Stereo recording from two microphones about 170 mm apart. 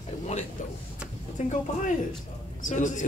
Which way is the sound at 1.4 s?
45° left (ahead or behind).